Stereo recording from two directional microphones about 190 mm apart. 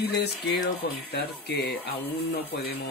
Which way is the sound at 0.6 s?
60° left (ahead or behind).